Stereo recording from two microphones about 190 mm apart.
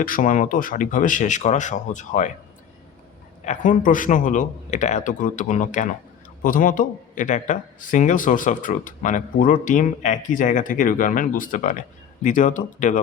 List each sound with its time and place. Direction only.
0.0 s speech: 45° left (ahead or behind)
3.4 s speech: 40° left (ahead or behind)